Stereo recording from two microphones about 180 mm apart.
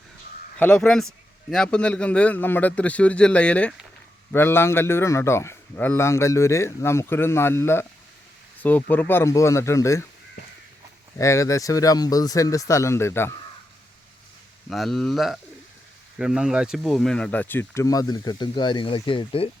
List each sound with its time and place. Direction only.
0.6 s a man's voice: 5° left (ahead or behind)
11.2 s a man's voice: 15° left (ahead or behind)
14.7 s a man's voice: centre (ahead or behind); by 19.5 s 30° left (ahead or behind)